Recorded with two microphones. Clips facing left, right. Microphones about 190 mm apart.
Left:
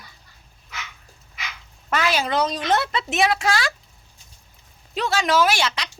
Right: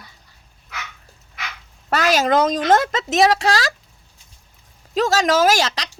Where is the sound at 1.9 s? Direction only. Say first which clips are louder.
Right 5 dB; 40° right (ahead or behind).